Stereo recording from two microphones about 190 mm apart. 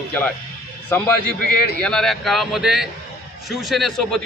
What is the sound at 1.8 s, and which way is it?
A man's voice, 5° left (ahead or behind).